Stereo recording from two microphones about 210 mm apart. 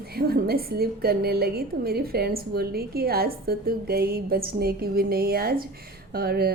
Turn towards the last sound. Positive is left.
turn(degrees=-45)  # may be behind; listen again after turning